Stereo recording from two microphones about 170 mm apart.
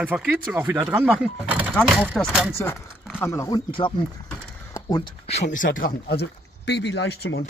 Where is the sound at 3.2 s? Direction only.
20° left (ahead or behind).